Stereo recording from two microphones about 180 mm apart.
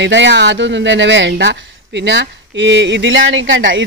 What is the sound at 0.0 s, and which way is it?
Speech, 80° right.